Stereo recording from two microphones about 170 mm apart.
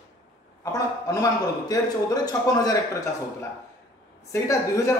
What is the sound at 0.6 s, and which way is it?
A man's voice, 20° left (ahead or behind).